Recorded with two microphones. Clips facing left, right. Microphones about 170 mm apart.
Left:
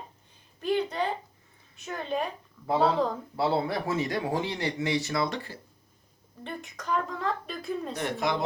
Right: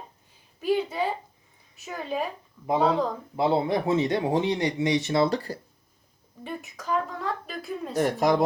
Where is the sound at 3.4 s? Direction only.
20° right (ahead or behind); by 5.6 s 35° right (ahead or behind).